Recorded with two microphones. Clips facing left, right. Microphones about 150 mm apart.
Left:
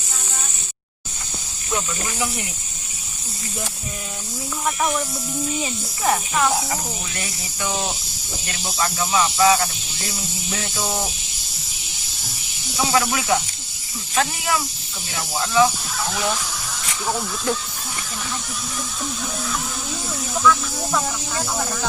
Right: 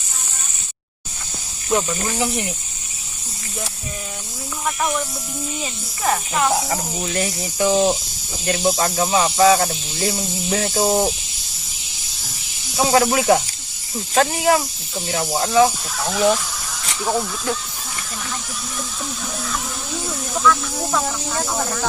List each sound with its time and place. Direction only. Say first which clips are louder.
1.7 s speech: right 6 dB; 35° right (ahead or behind)
4.6 s speech: even; centre (ahead or behind)
7.2 s speech: right 13 dB; 35° right (ahead or behind)
12.9 s speech: right 5 dB; 35° right (ahead or behind)
16.0 s speech: right 7 dB; centre (ahead or behind)
20.3 s speech: even; centre (ahead or behind)